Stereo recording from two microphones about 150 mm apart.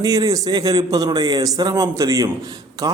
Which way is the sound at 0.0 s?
25° right (ahead or behind).